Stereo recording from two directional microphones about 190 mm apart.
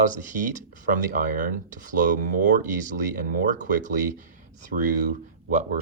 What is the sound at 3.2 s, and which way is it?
Speech, 45° right (ahead or behind).